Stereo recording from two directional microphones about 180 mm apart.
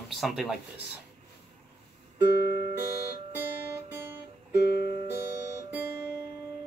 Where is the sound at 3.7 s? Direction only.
10° right (ahead or behind).